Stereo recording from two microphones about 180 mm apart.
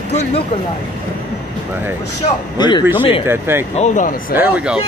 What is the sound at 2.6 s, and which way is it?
Speech, 25° left (ahead or behind).